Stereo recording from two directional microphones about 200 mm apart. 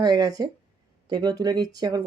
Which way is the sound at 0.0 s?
20° right (ahead or behind).